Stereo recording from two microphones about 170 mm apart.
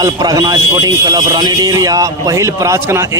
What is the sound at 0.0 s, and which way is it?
A man's voice, 25° right (ahead or behind).